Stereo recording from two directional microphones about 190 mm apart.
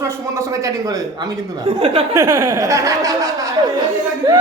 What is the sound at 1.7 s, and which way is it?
Speech, 30° right (ahead or behind).